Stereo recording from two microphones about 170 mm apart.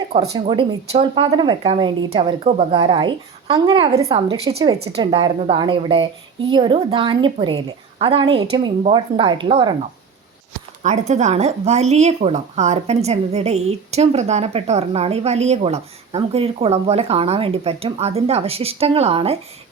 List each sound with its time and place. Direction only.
0.3 s a woman's voice: 30° right (ahead or behind)
4.8 s a woman's voice: 35° right (ahead or behind)
10.8 s a woman's voice: 45° right (ahead or behind)